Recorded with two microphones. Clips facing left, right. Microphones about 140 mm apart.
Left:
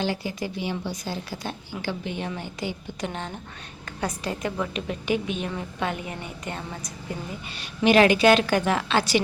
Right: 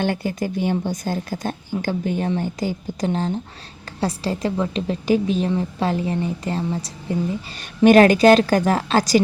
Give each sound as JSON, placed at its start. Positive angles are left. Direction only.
{"t": 0.0, "sound": "a woman's voice", "side_deg": -55}
{"t": 7.9, "sound": "a woman's voice", "side_deg": -45}